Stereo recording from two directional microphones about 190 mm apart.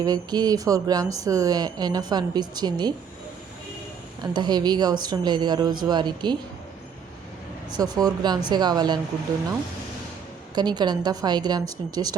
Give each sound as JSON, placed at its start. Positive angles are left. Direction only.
{"t": 0.0, "sound": "a woman's voice", "side_deg": -20}
{"t": 4.2, "sound": "a woman's voice", "side_deg": -20}
{"t": 7.7, "sound": "a woman's voice", "side_deg": -20}
{"t": 10.5, "sound": "a woman's voice", "side_deg": -20}